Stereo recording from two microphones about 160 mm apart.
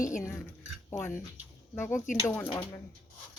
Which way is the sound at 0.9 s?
15° left (ahead or behind).